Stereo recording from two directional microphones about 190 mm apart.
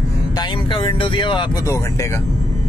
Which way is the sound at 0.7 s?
25° left (ahead or behind).